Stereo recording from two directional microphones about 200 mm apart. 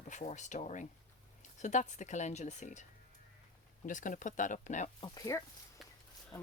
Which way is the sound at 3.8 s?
40° left (ahead or behind).